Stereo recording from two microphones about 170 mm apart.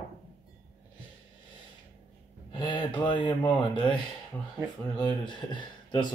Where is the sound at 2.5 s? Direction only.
30° left (ahead or behind).